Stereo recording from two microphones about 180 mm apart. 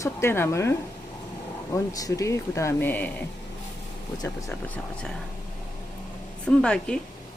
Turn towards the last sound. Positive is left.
turn(degrees=5)  # may be behind; listen again after turning